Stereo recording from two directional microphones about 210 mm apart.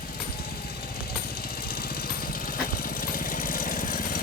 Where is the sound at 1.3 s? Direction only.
45° left (ahead or behind).